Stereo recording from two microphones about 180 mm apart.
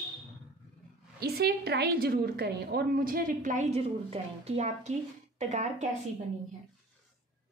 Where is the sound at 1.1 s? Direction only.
60° right (ahead or behind); by 5.9 s 40° right (ahead or behind).